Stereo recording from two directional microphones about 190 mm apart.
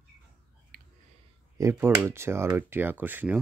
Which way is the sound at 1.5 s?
15° right (ahead or behind).